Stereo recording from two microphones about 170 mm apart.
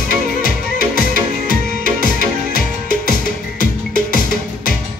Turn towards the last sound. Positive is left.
turn(degrees=55)  # may be behind; listen again after turning